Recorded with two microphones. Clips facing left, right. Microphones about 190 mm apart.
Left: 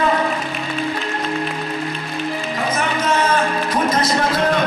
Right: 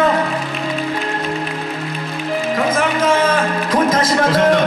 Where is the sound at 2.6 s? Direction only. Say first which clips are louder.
Right 3 dB; 90° right.